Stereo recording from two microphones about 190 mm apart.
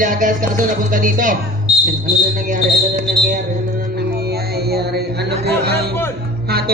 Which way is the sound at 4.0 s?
55° right (ahead or behind).